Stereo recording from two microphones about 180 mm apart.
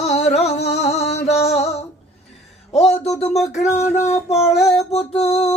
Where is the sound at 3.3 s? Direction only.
Centre (ahead or behind).